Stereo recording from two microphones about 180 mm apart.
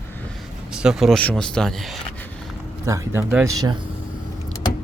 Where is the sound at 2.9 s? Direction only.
15° right (ahead or behind).